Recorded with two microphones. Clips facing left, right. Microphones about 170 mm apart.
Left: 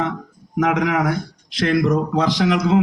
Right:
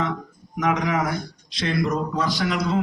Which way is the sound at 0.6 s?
65° left (ahead or behind).